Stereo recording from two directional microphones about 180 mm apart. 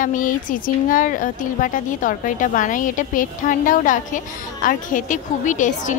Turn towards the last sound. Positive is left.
turn(degrees=45)  # may be behind; listen again after turning